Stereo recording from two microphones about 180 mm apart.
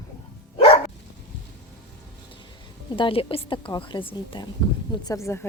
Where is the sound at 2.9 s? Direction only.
30° left (ahead or behind).